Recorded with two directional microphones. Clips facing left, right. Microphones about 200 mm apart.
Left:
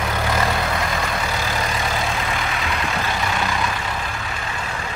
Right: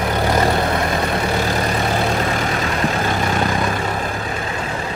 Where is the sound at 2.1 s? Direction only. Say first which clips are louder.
Right 5 dB; 40° right (ahead or behind).